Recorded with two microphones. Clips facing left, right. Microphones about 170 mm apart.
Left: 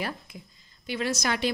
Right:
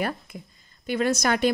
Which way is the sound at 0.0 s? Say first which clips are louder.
Right 5 dB; 50° right (ahead or behind).